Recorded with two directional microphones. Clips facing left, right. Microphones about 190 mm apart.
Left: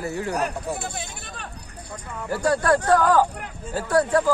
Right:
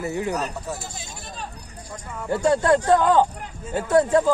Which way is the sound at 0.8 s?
60° left (ahead or behind).